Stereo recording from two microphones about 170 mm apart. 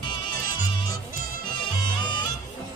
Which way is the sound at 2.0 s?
25° left (ahead or behind).